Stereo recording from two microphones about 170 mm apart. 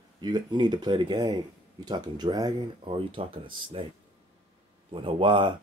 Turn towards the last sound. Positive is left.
turn(degrees=-30)  # may be behind; listen again after turning